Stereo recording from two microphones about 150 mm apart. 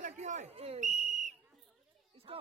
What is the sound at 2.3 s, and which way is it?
Speech, 35° right (ahead or behind).